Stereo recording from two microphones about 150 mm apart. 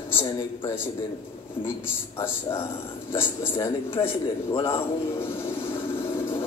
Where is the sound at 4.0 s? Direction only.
30° left (ahead or behind).